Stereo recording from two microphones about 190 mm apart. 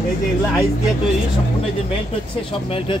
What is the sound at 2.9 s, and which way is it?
Speech, 25° left (ahead or behind).